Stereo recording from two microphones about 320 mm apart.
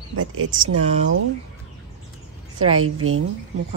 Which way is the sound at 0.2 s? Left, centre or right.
Right.